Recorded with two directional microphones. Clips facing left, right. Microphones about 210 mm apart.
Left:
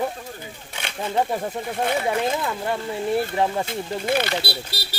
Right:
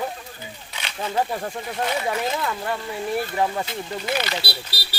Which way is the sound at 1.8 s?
55° left (ahead or behind).